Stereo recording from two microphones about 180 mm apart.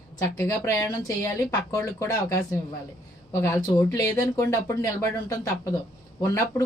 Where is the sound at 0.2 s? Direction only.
15° left (ahead or behind).